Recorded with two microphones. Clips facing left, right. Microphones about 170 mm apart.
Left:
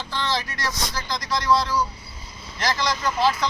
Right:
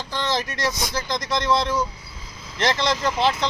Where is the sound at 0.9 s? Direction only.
20° right (ahead or behind).